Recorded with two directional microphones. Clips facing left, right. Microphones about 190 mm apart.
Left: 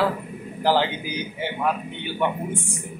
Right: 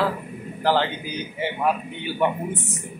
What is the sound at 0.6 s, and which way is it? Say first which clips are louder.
Speech: left 1 dB; 10° left (ahead or behind).